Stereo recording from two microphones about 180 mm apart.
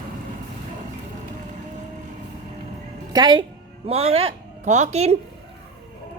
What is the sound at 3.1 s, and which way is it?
A woman's voice, 25° right (ahead or behind).